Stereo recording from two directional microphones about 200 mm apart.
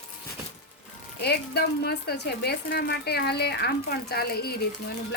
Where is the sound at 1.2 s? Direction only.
55° left (ahead or behind).